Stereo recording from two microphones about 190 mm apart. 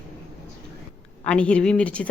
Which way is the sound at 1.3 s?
5° left (ahead or behind).